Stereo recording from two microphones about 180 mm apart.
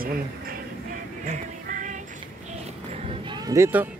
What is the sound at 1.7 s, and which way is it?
Music, 45° right (ahead or behind).